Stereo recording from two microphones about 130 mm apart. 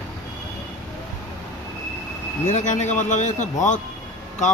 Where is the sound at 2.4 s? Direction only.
70° left (ahead or behind).